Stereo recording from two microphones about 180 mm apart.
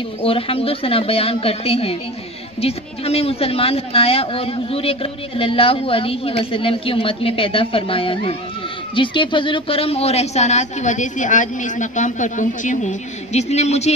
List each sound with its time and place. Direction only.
0.2 s a man's voice: 30° left (ahead or behind)